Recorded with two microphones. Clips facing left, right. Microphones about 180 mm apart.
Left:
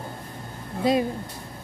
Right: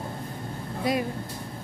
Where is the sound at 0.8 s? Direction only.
25° left (ahead or behind).